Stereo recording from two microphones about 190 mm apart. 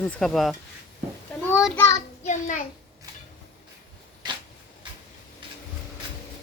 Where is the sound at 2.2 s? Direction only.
40° left (ahead or behind).